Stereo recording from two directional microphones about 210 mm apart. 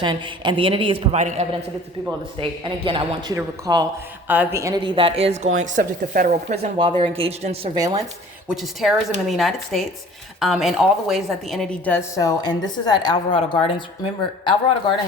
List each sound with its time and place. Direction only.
0.0 s a woman's voice: 20° right (ahead or behind); by 6.6 s 40° right (ahead or behind)
6.6 s a woman's voice: 25° right (ahead or behind)
8.4 s a woman's voice: centre (ahead or behind); by 14.5 s 25° left (ahead or behind)